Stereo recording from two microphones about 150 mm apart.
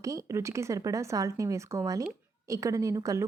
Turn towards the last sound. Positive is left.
turn(degrees=-20)  # may be behind; listen again after turning